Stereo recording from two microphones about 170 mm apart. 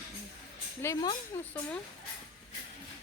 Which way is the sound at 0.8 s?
15° left (ahead or behind).